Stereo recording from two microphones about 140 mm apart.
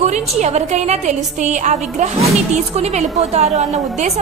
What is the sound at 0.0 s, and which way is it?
A woman's voice, 55° right (ahead or behind).